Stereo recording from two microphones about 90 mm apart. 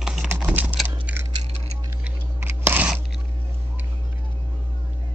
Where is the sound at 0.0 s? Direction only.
5° right (ahead or behind).